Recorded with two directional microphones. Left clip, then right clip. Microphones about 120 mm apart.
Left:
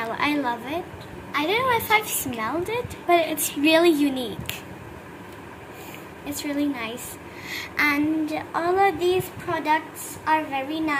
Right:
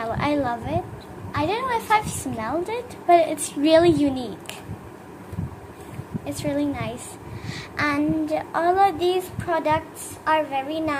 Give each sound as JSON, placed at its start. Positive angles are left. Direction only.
{"t": 0.0, "sound": "a woman's voice", "side_deg": -25}
{"t": 1.3, "sound": "child singing", "side_deg": -30}
{"t": 3.6, "sound": "a woman's voice", "side_deg": -30}
{"t": 6.2, "sound": "a woman's voice", "side_deg": -15}
{"t": 7.4, "sound": "child singing", "side_deg": -25}